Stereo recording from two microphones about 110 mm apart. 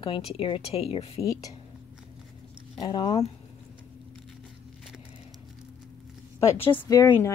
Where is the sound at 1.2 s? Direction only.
30° left (ahead or behind).